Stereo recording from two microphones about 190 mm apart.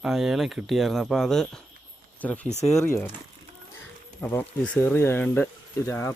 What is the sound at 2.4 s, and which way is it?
Speech, 35° left (ahead or behind).